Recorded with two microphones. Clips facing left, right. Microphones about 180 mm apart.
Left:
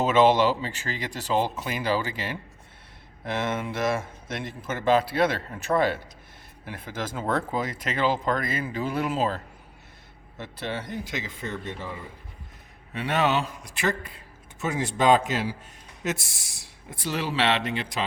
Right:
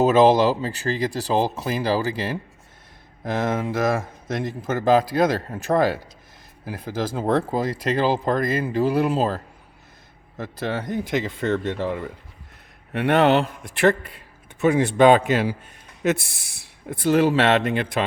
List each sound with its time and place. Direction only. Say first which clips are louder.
0.0 s speech: right 4 dB; 40° right (ahead or behind); by 18.0 s 55° right (ahead or behind)